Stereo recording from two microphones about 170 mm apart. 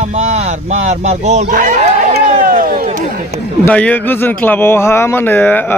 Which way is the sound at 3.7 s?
10° left (ahead or behind).